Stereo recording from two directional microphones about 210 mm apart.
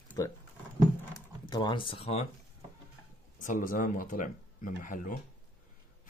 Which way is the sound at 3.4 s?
40° left (ahead or behind).